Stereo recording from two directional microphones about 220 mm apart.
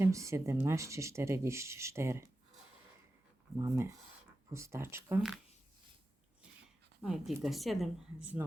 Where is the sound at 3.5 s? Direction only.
15° right (ahead or behind).